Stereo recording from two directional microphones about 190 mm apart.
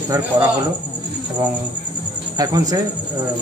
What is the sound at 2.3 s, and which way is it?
Speech, 20° right (ahead or behind).